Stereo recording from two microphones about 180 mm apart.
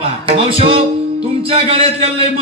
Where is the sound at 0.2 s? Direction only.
30° right (ahead or behind).